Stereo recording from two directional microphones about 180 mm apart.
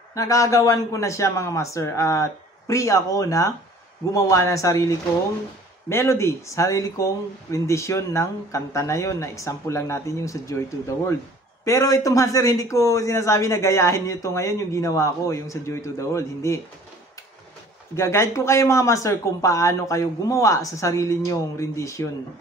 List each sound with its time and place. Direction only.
0.1 s a man's voice: 20° left (ahead or behind)
11.6 s a man's voice: 15° left (ahead or behind)
17.9 s a man's voice: 15° left (ahead or behind)